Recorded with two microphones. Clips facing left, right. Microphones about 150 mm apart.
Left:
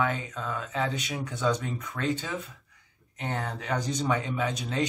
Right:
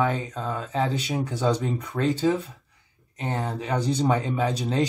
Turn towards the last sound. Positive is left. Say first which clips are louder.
# right 5 dB
turn(degrees=-35)  # may be behind; listen again after turning